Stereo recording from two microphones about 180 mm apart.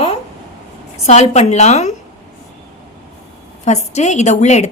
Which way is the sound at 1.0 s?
40° left (ahead or behind).